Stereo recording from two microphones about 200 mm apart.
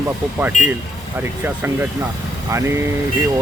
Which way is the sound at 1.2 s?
10° right (ahead or behind).